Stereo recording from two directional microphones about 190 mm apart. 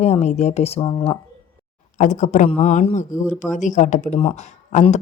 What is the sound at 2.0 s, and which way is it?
Speech, 40° left (ahead or behind).